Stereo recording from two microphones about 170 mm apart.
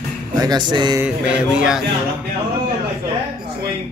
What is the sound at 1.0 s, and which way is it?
Speech, 5° right (ahead or behind).